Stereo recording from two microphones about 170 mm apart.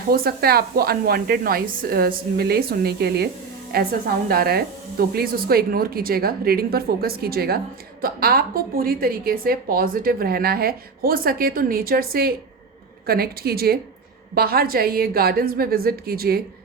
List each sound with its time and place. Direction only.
0.1 s a woman's voice: 65° right (ahead or behind)